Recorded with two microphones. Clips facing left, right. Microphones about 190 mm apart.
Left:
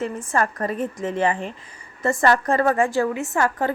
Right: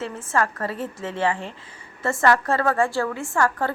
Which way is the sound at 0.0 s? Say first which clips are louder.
Left 1 dB; 15° left (ahead or behind).